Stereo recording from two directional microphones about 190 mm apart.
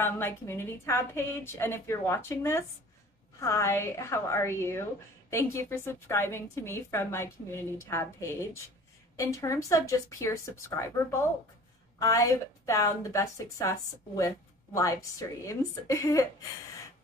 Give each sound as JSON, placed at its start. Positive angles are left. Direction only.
{"t": 0.0, "sound": "a woman's voice", "side_deg": 10}